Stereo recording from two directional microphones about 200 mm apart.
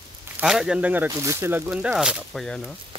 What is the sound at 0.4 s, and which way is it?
Speech, 5° right (ahead or behind).